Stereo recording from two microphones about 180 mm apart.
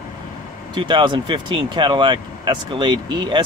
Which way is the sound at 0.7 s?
25° right (ahead or behind).